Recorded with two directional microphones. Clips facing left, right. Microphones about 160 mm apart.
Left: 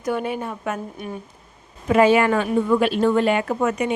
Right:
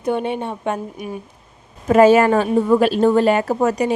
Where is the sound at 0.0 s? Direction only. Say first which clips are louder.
Right 3 dB; 25° right (ahead or behind).